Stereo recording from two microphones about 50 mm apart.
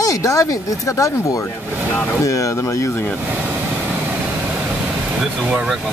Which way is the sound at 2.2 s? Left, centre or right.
Left.